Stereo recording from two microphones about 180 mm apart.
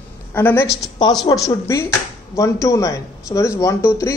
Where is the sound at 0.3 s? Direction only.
10° left (ahead or behind).